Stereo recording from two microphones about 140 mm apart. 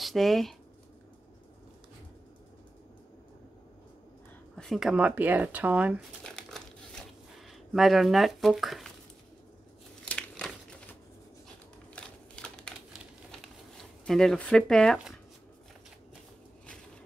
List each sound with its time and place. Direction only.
0.0 s speech: centre (ahead or behind)
4.6 s speech: centre (ahead or behind)
6.2 s crumpling: 5° left (ahead or behind)
7.7 s speech: centre (ahead or behind)
10.0 s crumpling: 10° left (ahead or behind)
11.9 s a sound: 5° left (ahead or behind)